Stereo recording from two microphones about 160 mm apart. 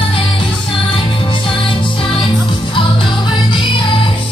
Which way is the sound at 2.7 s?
30° left (ahead or behind).